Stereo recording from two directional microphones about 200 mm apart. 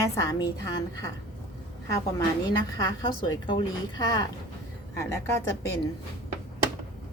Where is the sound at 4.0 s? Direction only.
20° left (ahead or behind).